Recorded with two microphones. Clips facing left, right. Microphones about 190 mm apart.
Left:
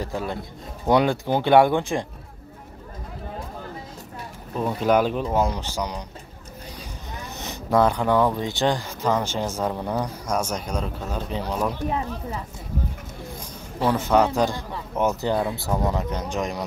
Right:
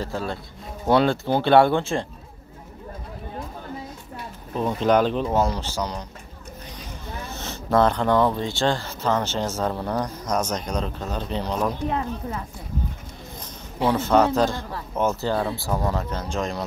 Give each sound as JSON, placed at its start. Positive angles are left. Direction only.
{"t": 0.0, "sound": "speech", "side_deg": 15}
{"t": 4.6, "sound": "speech", "side_deg": 5}
{"t": 7.3, "sound": "speech", "side_deg": 15}
{"t": 13.9, "sound": "speech", "side_deg": 15}